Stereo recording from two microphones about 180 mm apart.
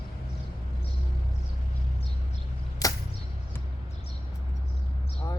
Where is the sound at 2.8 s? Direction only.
20° left (ahead or behind).